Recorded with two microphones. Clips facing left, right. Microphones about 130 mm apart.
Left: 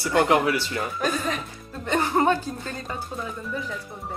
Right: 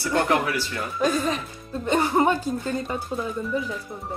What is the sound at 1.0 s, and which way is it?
A woman's voice, 15° right (ahead or behind).